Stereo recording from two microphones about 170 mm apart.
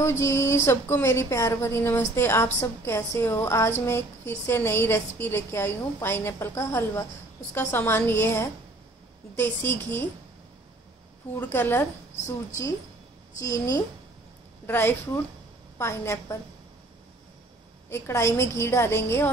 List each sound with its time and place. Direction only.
0.0 s a woman's voice: 15° left (ahead or behind)
11.3 s a woman's voice: 10° left (ahead or behind)
17.8 s a woman's voice: 15° left (ahead or behind)